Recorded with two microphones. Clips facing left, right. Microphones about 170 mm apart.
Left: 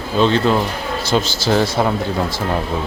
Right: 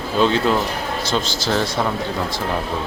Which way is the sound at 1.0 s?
5° left (ahead or behind).